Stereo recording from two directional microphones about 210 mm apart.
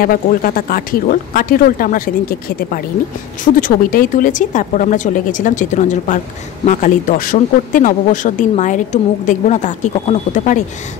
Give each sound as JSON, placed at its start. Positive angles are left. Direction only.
{"t": 0.0, "sound": "speech", "side_deg": 45}